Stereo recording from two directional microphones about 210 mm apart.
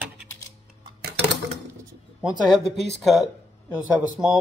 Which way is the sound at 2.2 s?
Centre (ahead or behind).